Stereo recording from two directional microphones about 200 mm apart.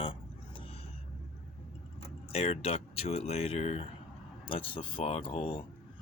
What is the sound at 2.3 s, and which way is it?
Speech, 30° left (ahead or behind).